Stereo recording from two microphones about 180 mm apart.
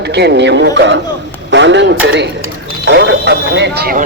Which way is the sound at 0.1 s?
70° right (ahead or behind).